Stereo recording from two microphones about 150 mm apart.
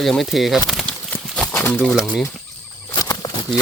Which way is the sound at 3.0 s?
25° left (ahead or behind).